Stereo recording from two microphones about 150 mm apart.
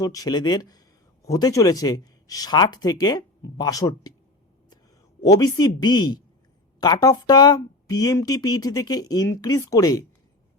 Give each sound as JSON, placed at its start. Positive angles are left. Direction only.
{"t": 0.0, "sound": "a woman's voice", "side_deg": 25}
{"t": 5.2, "sound": "a woman's voice", "side_deg": 25}